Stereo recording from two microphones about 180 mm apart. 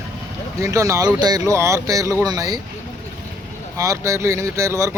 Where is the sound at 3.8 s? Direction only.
15° right (ahead or behind).